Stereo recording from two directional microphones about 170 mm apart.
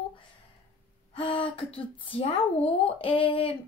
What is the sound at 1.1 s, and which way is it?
Speech, 30° left (ahead or behind).